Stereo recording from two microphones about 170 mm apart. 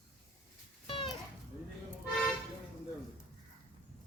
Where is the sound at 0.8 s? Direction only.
30° left (ahead or behind).